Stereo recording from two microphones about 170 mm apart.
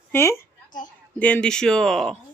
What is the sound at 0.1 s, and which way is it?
A woman's voice, 15° left (ahead or behind).